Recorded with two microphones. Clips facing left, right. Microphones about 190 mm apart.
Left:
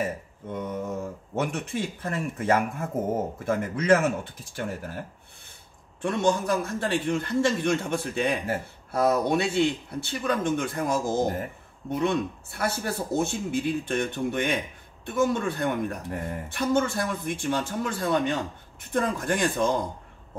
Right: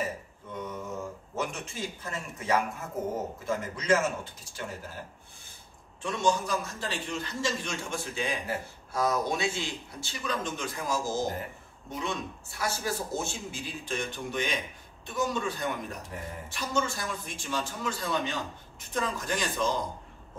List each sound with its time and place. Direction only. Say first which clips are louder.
0.5 s mantra: left 5 dB; 55° left (ahead or behind)
1.3 s a man's voice: left 7 dB; 60° left (ahead or behind)
6.0 s a man's voice: left 4 dB; 55° left (ahead or behind)